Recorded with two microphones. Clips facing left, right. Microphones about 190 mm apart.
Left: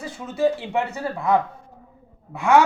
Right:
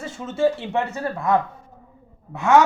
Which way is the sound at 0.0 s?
25° right (ahead or behind).